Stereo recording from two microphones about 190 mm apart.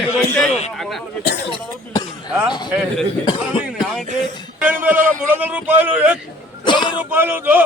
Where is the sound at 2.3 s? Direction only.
5° right (ahead or behind).